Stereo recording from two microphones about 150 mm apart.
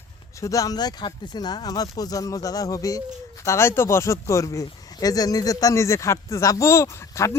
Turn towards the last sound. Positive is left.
turn(degrees=20)  # may be behind; listen again after turning